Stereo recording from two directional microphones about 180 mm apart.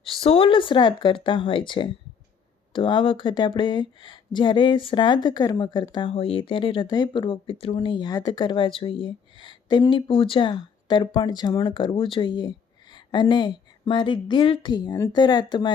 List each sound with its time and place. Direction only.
0.0 s speech: 30° left (ahead or behind)